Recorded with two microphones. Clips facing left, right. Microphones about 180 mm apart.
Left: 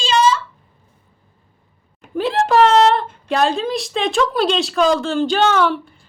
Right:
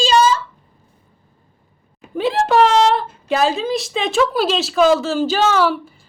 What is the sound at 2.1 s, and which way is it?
A woman's voice, centre (ahead or behind).